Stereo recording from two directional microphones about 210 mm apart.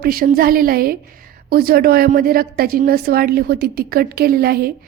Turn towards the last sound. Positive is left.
turn(degrees=-50)  # may be behind; listen again after turning